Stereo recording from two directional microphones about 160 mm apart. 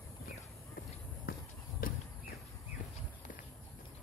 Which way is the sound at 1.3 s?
65° left (ahead or behind).